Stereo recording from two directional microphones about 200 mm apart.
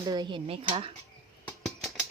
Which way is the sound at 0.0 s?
20° right (ahead or behind).